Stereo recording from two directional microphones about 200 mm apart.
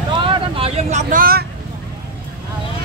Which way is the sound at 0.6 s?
35° right (ahead or behind).